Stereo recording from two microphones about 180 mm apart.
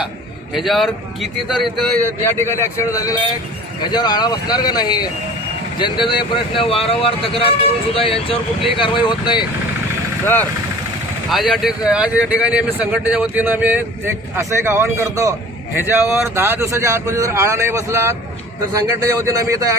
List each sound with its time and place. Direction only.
0.5 s a man's voice: centre (ahead or behind)
2.2 s a man's voice: 15° left (ahead or behind)
11.3 s a man's voice: centre (ahead or behind); by 19.7 s 20° right (ahead or behind)